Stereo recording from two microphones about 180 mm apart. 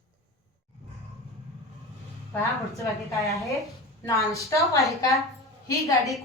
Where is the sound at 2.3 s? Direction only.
15° left (ahead or behind).